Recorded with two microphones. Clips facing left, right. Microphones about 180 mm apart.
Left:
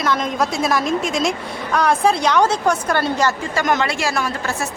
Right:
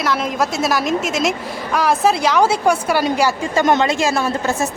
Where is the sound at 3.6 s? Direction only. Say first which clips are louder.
Right 4 dB; 25° right (ahead or behind).